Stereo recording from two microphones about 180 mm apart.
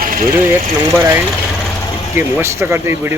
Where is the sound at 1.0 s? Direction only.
15° right (ahead or behind).